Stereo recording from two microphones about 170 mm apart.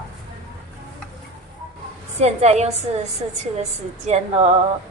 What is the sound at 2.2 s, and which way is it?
A woman's voice, 40° right (ahead or behind).